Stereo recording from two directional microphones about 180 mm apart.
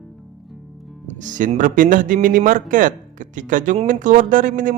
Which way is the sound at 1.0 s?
45° right (ahead or behind).